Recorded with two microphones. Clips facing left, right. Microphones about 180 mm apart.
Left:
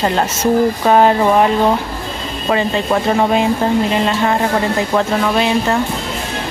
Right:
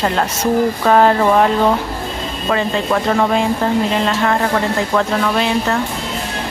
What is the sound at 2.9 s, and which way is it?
Speech, 15° left (ahead or behind).